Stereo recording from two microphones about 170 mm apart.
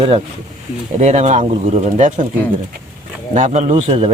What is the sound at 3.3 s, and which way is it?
Speech, 45° right (ahead or behind).